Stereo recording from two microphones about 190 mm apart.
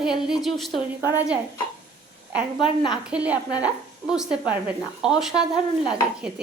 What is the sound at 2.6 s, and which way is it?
Speech, 25° left (ahead or behind).